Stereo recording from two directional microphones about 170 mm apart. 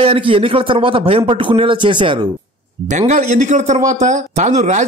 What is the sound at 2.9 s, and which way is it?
Speech, 45° right (ahead or behind).